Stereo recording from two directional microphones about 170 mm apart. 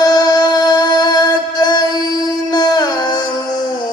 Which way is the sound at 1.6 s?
25° left (ahead or behind).